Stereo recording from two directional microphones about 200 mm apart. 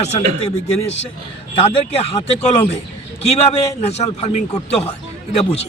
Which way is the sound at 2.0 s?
30° left (ahead or behind).